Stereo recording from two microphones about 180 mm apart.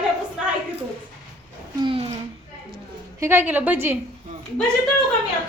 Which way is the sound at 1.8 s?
25° right (ahead or behind).